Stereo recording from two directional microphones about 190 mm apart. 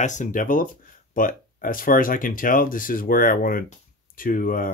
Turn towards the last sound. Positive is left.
turn(degrees=45)  # may be behind; listen again after turning